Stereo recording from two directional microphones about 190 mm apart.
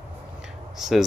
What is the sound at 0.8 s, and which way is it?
Speech, centre (ahead or behind).